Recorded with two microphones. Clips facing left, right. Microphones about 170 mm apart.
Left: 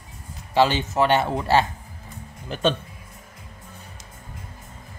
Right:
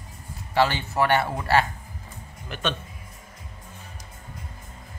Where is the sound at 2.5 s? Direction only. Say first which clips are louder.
Left 7 dB; 35° left (ahead or behind).